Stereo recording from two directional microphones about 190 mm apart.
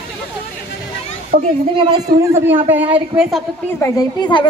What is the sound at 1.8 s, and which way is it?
A man's voice, 20° right (ahead or behind).